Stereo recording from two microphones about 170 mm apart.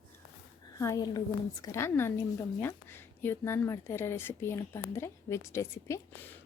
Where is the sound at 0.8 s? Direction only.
20° left (ahead or behind).